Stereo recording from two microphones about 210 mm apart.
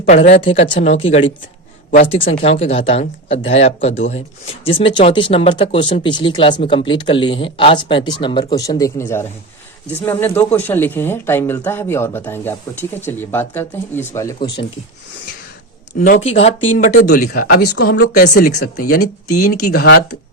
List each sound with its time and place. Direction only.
0.3 s speech: 25° left (ahead or behind)
16.0 s speech: 35° left (ahead or behind)
16.7 s speech: 40° left (ahead or behind)